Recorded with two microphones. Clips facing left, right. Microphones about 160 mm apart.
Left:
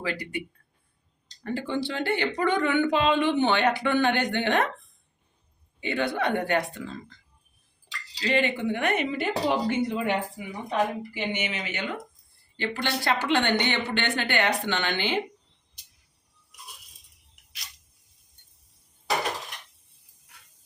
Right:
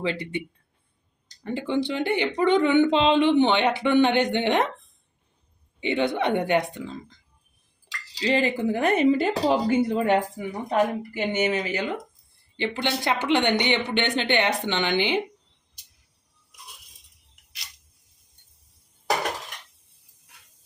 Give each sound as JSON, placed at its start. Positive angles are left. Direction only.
{"t": 0.0, "sound": "speech", "side_deg": -25}
{"t": 1.5, "sound": "speech", "side_deg": -20}
{"t": 5.8, "sound": "speech", "side_deg": -20}
{"t": 8.2, "sound": "speech", "side_deg": -30}
{"t": 12.5, "sound": "speech", "side_deg": -20}